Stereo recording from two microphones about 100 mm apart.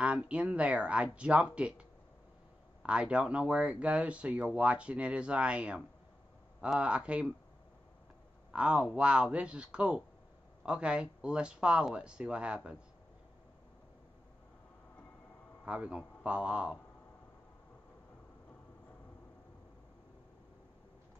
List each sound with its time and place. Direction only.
0.0 s speech: 10° right (ahead or behind)
8.5 s speech: 10° right (ahead or behind)
15.6 s speech: 10° right (ahead or behind)